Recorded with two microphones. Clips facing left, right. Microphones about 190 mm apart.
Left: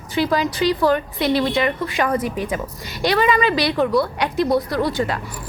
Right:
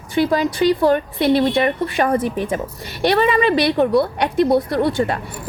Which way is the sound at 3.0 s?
55° right (ahead or behind).